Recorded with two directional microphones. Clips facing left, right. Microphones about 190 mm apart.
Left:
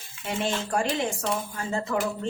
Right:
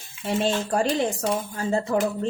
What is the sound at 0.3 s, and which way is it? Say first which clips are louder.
Speech: right 5 dB; 35° right (ahead or behind).